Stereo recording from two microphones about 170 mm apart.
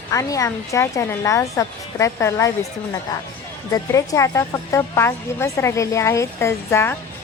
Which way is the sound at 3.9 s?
20° left (ahead or behind).